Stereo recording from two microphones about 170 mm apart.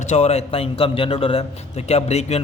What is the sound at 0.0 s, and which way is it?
A man's voice, 45° left (ahead or behind).